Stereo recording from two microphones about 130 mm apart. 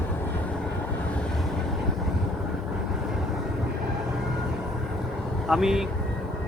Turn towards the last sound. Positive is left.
turn(degrees=-5)  # may be behind; listen again after turning